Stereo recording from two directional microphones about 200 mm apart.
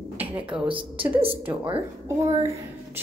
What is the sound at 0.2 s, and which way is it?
A woman's voice, 25° right (ahead or behind).